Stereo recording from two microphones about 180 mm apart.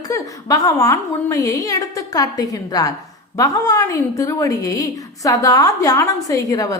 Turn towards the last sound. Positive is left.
turn(degrees=20)  # may be behind; listen again after turning